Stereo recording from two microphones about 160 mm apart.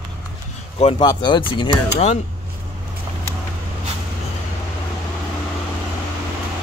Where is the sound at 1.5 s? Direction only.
35° left (ahead or behind).